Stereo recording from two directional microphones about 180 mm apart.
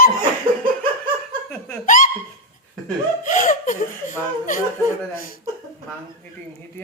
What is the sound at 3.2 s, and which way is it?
Laughter, 45° left (ahead or behind).